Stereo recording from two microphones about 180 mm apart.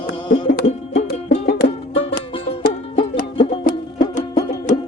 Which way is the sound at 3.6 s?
45° left (ahead or behind).